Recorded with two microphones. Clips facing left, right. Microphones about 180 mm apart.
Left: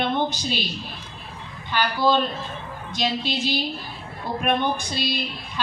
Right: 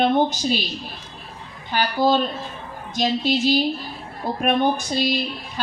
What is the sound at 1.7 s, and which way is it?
A woman's voice, 45° right (ahead or behind).